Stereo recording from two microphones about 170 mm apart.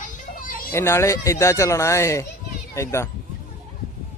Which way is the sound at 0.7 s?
15° left (ahead or behind).